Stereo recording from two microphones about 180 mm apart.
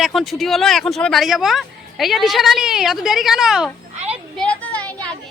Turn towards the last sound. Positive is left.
turn(degrees=5)  # may be behind; listen again after turning